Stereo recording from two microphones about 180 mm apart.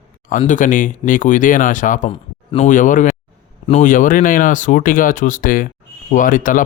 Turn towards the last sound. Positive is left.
turn(degrees=45)  # may be behind; listen again after turning